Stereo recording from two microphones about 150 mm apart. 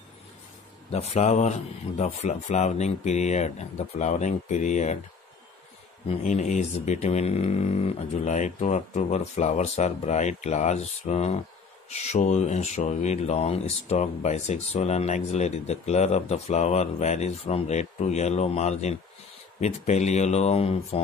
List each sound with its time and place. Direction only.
0.9 s speech: 50° left (ahead or behind)
6.0 s speech: 50° left (ahead or behind)